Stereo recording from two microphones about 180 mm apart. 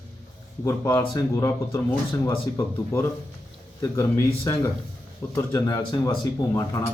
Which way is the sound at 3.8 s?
15° left (ahead or behind).